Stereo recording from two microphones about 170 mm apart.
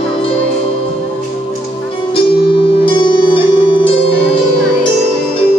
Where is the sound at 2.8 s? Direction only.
30° left (ahead or behind).